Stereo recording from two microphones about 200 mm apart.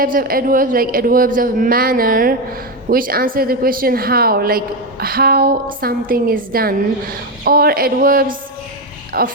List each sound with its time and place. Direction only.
0.0 s a woman's voice: 45° right (ahead or behind)